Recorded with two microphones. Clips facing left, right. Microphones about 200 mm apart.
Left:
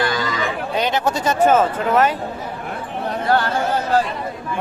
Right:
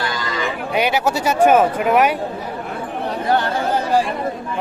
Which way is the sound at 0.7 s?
10° right (ahead or behind).